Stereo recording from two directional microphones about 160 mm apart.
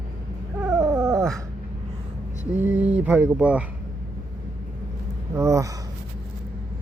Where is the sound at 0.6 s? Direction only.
20° right (ahead or behind).